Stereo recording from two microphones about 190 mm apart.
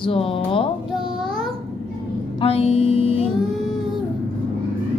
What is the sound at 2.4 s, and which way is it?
Music, 30° left (ahead or behind).